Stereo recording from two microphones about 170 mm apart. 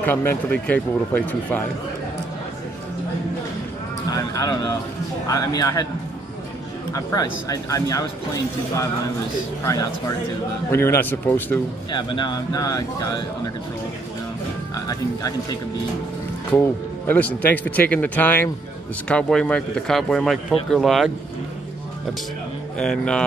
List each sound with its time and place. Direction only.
0.0 s speech: 15° left (ahead or behind)
4.1 s a sound: 20° left (ahead or behind)
5.3 s speech: 20° left (ahead or behind)
6.9 s speech: 20° left (ahead or behind)
10.7 s speech: 15° left (ahead or behind)
11.9 s speech: 30° left (ahead or behind)
16.5 s speech: 15° left (ahead or behind)
22.8 s speech: 5° left (ahead or behind)